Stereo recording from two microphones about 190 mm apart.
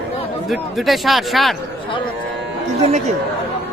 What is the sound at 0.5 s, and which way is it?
Speech, centre (ahead or behind).